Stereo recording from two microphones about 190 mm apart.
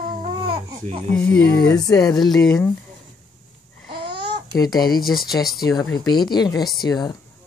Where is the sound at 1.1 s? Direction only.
5° left (ahead or behind).